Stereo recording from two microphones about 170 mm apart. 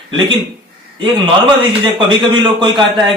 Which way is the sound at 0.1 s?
30° right (ahead or behind).